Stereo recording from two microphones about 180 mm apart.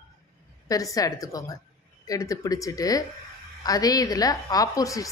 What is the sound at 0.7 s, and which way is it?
A woman's voice, 20° left (ahead or behind).